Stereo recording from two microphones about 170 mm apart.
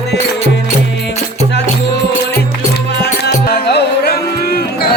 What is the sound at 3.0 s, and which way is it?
Music, 75° left (ahead or behind).